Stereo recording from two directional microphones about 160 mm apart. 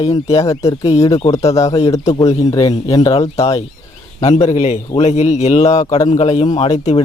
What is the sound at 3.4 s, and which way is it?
Speech, 35° left (ahead or behind).